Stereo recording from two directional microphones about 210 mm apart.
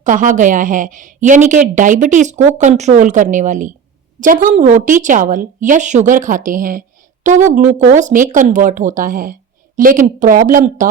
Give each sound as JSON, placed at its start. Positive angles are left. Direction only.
{"t": 0.0, "sound": "a woman's voice", "side_deg": -35}